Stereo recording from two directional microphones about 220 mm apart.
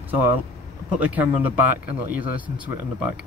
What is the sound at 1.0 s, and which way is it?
Speech, 5° right (ahead or behind).